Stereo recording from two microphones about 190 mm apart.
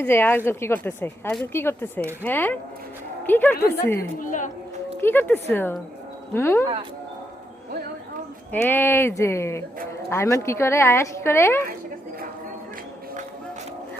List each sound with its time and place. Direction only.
0.0 s a woman's voice: 10° left (ahead or behind)
4.2 s a woman's voice: 40° left (ahead or behind)
4.9 s a woman's voice: 10° left (ahead or behind)
8.5 s a woman's voice: 10° left (ahead or behind)